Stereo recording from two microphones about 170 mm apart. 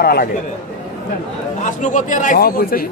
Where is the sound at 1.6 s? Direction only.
50° left (ahead or behind).